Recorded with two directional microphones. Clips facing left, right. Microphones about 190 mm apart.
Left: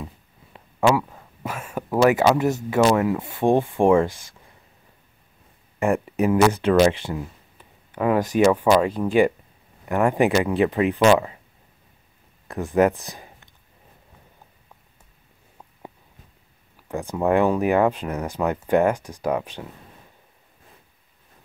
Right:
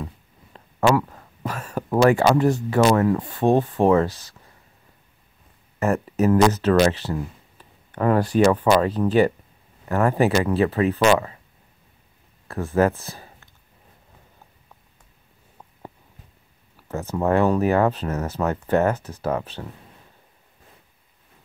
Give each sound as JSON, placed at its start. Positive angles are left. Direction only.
{"t": 0.0, "sound": "a sound", "side_deg": 10}
{"t": 2.2, "sound": "speech", "side_deg": 10}
{"t": 5.8, "sound": "speech", "side_deg": 15}
{"t": 12.4, "sound": "speech", "side_deg": 15}
{"t": 16.8, "sound": "speech", "side_deg": 15}